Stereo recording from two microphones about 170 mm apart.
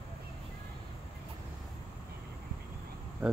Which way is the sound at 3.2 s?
10° right (ahead or behind).